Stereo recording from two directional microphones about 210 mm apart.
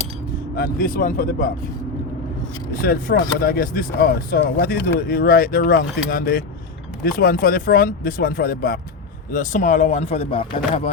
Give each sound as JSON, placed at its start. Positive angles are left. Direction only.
{"t": 0.5, "sound": "speech", "side_deg": 45}
{"t": 2.8, "sound": "speech", "side_deg": 45}